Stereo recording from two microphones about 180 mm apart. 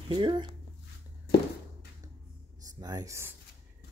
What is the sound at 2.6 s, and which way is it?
Speech, 20° right (ahead or behind).